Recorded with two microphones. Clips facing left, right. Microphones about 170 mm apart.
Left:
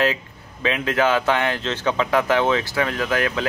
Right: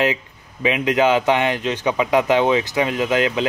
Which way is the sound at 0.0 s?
15° right (ahead or behind).